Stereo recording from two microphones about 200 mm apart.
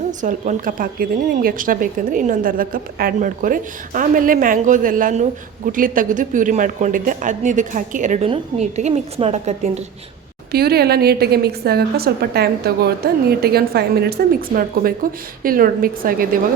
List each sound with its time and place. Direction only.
0.1 s a woman's voice: 40° right (ahead or behind)
10.5 s a woman's voice: 50° right (ahead or behind)